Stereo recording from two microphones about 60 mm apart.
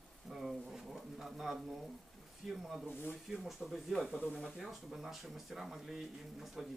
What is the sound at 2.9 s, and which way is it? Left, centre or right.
Speech, left.